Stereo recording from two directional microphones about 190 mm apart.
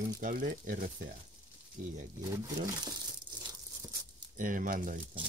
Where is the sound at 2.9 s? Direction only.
20° right (ahead or behind).